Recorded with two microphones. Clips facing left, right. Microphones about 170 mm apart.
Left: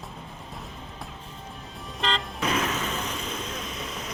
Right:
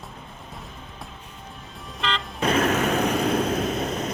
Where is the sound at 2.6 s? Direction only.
65° right (ahead or behind).